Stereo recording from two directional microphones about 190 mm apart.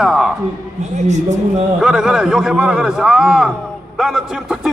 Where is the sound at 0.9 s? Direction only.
40° right (ahead or behind).